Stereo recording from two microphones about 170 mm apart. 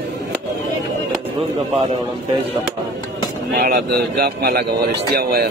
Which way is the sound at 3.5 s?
55° right (ahead or behind).